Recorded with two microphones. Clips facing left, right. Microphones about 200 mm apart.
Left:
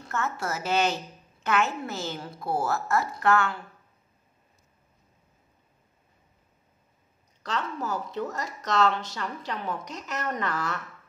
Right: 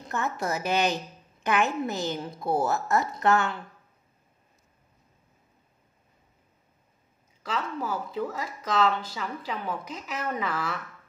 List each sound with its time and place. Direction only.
0.0 s a woman's voice: 15° right (ahead or behind)
7.4 s a woman's voice: 5° right (ahead or behind)